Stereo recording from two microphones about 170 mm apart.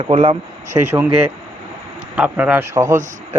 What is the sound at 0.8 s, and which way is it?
Speech, 15° right (ahead or behind).